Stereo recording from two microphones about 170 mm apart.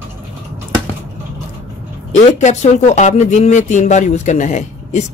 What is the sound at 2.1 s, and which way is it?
Speech, 45° left (ahead or behind).